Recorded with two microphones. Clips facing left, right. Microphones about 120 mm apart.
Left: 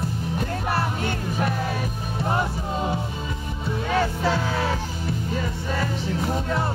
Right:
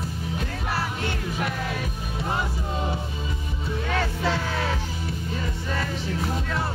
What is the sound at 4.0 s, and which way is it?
Music, 10° left (ahead or behind).